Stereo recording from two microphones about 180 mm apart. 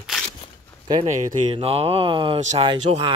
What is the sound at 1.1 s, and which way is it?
Speech, 35° right (ahead or behind).